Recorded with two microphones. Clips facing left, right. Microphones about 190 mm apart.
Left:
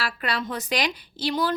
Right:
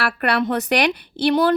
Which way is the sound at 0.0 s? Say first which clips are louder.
Right 8 dB; 65° right (ahead or behind).